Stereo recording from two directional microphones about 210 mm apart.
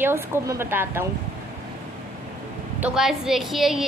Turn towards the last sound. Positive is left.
turn(degrees=0)  # may be behind; listen again after turning